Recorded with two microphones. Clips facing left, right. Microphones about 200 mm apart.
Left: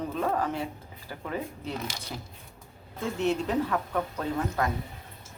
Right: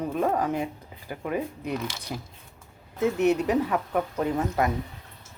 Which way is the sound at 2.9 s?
20° right (ahead or behind).